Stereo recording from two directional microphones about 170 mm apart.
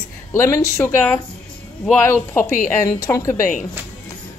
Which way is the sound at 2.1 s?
15° left (ahead or behind).